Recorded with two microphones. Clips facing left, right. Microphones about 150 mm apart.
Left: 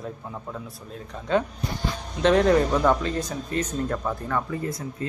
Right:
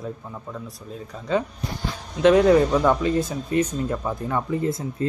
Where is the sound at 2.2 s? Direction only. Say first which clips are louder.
Right 4 dB; 10° right (ahead or behind).